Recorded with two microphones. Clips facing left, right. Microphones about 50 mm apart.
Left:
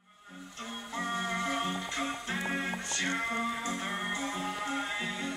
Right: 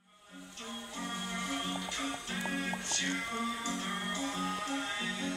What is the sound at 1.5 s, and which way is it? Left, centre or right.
Music, left.